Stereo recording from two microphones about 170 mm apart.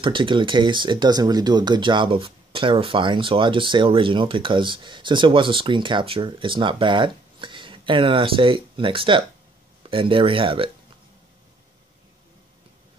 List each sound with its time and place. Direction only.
0.0 s speech: 30° right (ahead or behind)